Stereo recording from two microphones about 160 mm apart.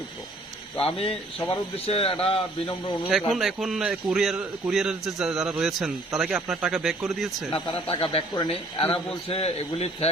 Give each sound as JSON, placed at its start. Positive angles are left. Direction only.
{"t": 0.8, "sound": "speech", "side_deg": 40}
{"t": 3.1, "sound": "a man's voice", "side_deg": 0}
{"t": 7.5, "sound": "speech", "side_deg": 30}